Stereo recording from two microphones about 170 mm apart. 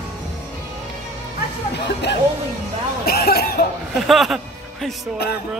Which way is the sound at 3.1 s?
65° left (ahead or behind).